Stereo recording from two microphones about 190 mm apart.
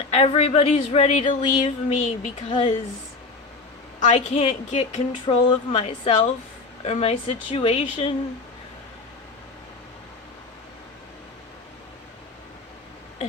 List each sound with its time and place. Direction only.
0.1 s speech: 35° left (ahead or behind)
1.6 s speech: 35° left (ahead or behind)
4.0 s speech: 35° left (ahead or behind)